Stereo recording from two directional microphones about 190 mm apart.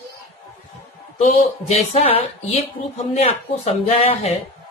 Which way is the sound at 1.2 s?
40° left (ahead or behind).